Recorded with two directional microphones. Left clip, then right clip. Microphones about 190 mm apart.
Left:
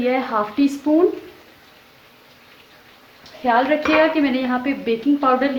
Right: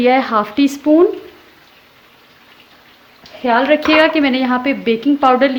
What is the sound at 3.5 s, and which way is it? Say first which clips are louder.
A woman's voice: right 4 dB; 55° right (ahead or behind).